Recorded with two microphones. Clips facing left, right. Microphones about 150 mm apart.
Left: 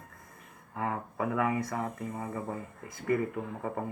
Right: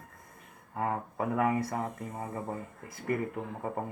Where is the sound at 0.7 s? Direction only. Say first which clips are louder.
Right 1 dB; 40° right (ahead or behind).